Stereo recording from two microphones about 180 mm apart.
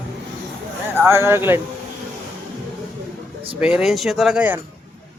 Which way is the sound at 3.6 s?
5° right (ahead or behind).